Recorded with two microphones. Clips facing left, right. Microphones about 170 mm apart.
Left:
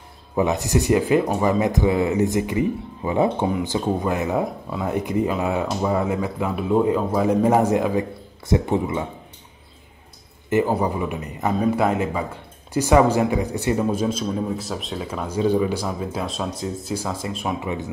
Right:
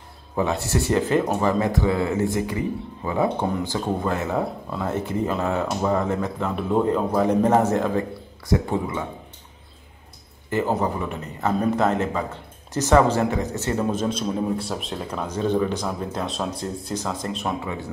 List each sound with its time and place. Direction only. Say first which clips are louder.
0.4 s a man's voice: left 3 dB; 15° left (ahead or behind)
10.5 s a man's voice: left 3 dB; 10° left (ahead or behind)